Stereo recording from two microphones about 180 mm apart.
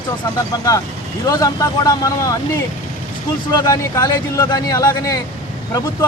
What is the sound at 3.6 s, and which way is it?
Speech, 20° left (ahead or behind).